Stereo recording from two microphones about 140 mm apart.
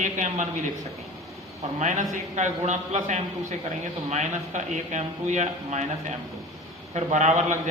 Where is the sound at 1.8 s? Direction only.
60° right (ahead or behind).